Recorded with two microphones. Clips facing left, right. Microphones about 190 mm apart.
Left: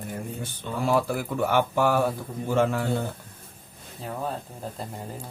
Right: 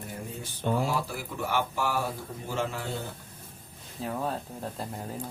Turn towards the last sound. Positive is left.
turn(degrees=0)  # may be behind; listen again after turning